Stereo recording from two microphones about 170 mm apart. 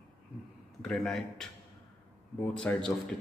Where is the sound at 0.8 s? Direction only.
5° left (ahead or behind).